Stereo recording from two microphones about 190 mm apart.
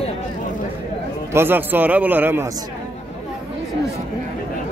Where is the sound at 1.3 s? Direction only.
10° right (ahead or behind).